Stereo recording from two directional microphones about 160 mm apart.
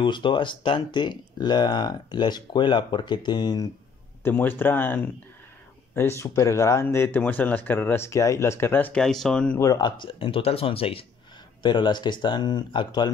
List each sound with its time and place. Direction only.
0.0 s speech: 30° left (ahead or behind)
4.2 s speech: 10° left (ahead or behind)
9.6 s speech: 25° left (ahead or behind)